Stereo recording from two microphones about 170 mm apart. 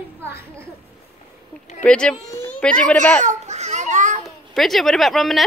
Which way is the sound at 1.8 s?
5° left (ahead or behind).